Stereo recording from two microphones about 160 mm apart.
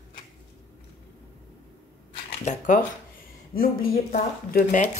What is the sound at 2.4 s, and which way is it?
Speech, 45° left (ahead or behind).